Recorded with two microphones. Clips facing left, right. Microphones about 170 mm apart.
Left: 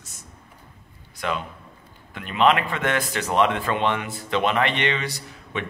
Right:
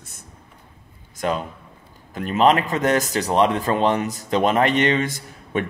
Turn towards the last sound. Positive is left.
turn(degrees=-50)  # may be behind; listen again after turning